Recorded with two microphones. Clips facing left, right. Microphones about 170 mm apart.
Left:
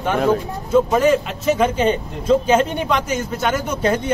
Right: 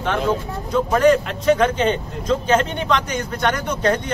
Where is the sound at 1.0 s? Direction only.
5° left (ahead or behind).